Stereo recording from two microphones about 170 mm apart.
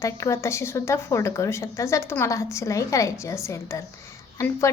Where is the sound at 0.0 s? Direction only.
15° left (ahead or behind).